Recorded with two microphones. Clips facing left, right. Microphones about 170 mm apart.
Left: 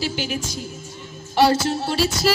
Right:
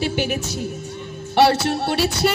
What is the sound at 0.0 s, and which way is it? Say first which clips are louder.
Music: right 4 dB; 60° right (ahead or behind).